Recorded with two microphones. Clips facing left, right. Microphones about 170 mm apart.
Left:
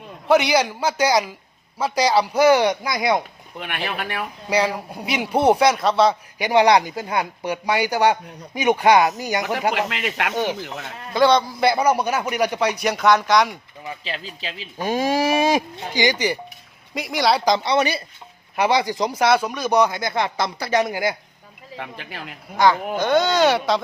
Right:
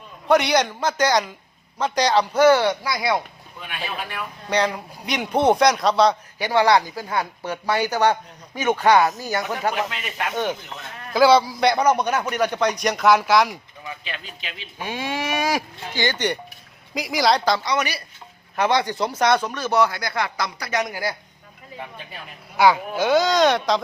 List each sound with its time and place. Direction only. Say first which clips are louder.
0.3 s speech: left 1 dB; 5° left (ahead or behind); by 3.2 s 20° left (ahead or behind)
3.6 s speech: left 3 dB; 70° left (ahead or behind)
4.4 s speech: left 1 dB; 5° left (ahead or behind)
6.4 s speech: left 2 dB; 20° left (ahead or behind)
9.7 s speech: left 3 dB; 85° left
10.3 s speech: even; 10° left (ahead or behind)
11.1 s speech: right 1 dB; 5° right (ahead or behind)
11.6 s speech: even; 5° left (ahead or behind)
13.8 s speech: left 4 dB; 30° left (ahead or behind); by 17.4 s centre (ahead or behind)
17.4 s speech: left 3 dB; 20° left (ahead or behind)
18.5 s speech: left 1 dB; 10° left (ahead or behind); by 21.1 s 25° left (ahead or behind)
21.8 s speech: left 3 dB; 85° left
22.5 s speech: even; 10° right (ahead or behind)